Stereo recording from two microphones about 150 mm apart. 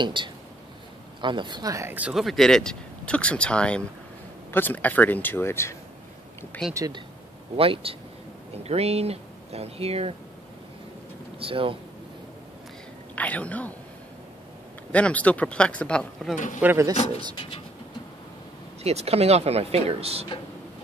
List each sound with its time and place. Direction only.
0.0 s speech: 30° right (ahead or behind)
2.0 s speech: 5° right (ahead or behind); by 5.8 s 15° left (ahead or behind)
6.7 s speech: 25° right (ahead or behind)
7.5 s speech: 40° right (ahead or behind)
11.3 s speech: 35° right (ahead or behind)
13.1 s speech: 10° left (ahead or behind)
14.9 s speech: 10° left (ahead or behind)
16.6 s speech: 10° right (ahead or behind)
18.8 s speech: 45° right (ahead or behind)